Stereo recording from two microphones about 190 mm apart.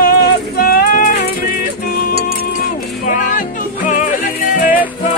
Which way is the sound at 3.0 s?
45° left (ahead or behind).